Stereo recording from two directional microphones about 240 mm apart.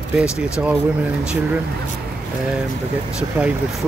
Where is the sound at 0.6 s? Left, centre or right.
Centre.